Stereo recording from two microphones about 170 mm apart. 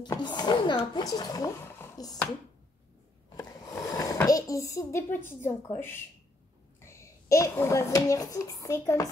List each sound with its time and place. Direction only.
0.0 s a child's voice: 25° left (ahead or behind)
3.3 s a sound: 20° left (ahead or behind)
6.8 s a child's voice: 15° left (ahead or behind)